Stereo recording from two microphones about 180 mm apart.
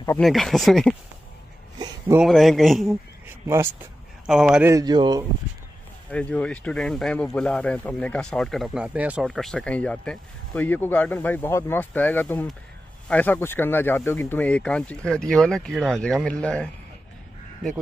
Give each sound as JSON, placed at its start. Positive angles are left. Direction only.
{"t": 0.2, "sound": "a man's voice", "side_deg": 0}
{"t": 2.1, "sound": "a man's voice", "side_deg": 0}
{"t": 4.3, "sound": "a man's voice", "side_deg": -5}
{"t": 4.6, "sound": "speech", "side_deg": -20}
{"t": 6.0, "sound": "a man's voice", "side_deg": 5}